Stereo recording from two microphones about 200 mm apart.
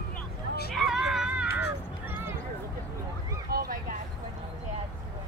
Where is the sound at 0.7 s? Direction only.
Centre (ahead or behind).